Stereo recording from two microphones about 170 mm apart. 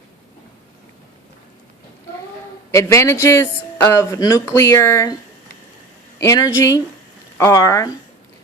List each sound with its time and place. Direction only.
2.7 s speech: 15° left (ahead or behind)
6.2 s speech: 15° left (ahead or behind)